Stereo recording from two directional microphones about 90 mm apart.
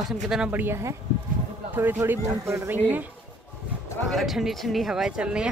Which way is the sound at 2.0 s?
30° right (ahead or behind).